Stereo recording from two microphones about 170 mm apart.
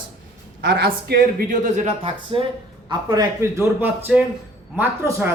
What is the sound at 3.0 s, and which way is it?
A man's voice, 15° right (ahead or behind).